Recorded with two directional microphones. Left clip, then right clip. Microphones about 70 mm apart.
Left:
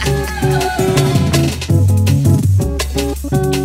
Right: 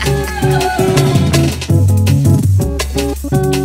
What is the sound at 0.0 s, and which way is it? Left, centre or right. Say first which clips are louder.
Music: right 2 dB; right.